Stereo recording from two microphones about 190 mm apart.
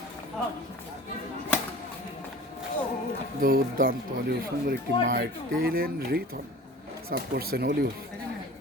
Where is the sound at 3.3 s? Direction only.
50° right (ahead or behind).